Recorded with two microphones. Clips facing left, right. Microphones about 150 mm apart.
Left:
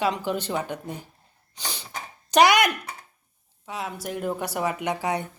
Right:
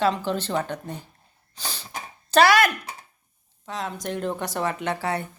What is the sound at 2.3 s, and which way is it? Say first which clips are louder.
Speech: right 1 dB; 15° left (ahead or behind).